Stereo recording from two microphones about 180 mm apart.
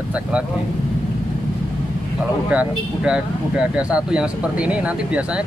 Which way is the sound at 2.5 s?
5° right (ahead or behind).